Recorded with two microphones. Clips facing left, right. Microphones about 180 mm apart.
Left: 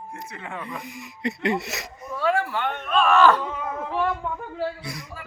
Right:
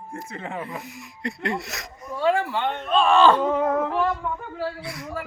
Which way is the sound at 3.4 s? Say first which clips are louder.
Right 9 dB; 50° right (ahead or behind).